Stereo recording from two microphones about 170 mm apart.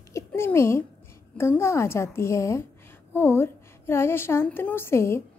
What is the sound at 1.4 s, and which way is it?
A woman's voice, 15° left (ahead or behind).